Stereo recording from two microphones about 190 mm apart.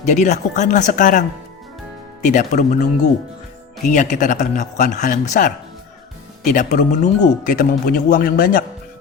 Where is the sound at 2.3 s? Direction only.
40° left (ahead or behind).